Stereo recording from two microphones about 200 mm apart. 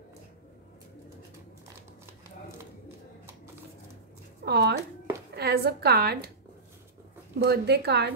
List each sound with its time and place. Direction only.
4.5 s a woman's voice: 55° right (ahead or behind)
7.3 s speech: 55° right (ahead or behind)